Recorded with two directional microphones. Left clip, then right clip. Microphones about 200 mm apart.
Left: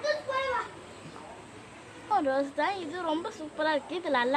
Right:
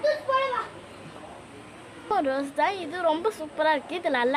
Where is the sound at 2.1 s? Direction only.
50° right (ahead or behind).